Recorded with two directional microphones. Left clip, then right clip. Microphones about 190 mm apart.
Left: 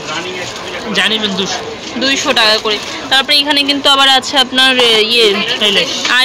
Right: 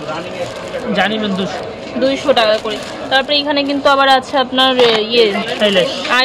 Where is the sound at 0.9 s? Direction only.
40° right (ahead or behind).